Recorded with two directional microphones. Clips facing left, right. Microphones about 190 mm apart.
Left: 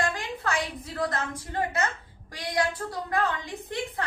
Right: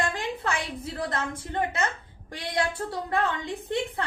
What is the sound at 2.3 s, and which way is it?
A woman's voice, 25° right (ahead or behind).